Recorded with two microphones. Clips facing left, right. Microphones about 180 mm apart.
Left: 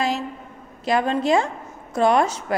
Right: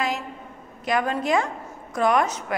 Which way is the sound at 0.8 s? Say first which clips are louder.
Left 3 dB; 30° left (ahead or behind).